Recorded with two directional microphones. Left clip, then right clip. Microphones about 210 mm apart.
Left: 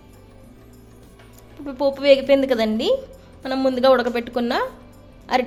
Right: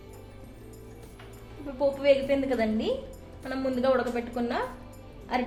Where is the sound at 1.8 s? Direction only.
50° left (ahead or behind).